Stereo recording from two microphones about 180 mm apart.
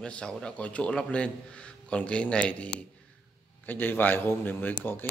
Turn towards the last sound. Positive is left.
turn(degrees=10)  # may be behind; listen again after turning